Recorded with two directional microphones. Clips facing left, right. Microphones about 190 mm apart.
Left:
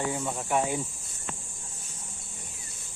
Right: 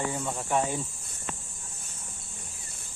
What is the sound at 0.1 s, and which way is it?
Speech, 5° left (ahead or behind).